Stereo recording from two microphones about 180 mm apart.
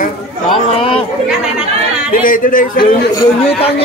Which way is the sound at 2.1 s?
50° left (ahead or behind).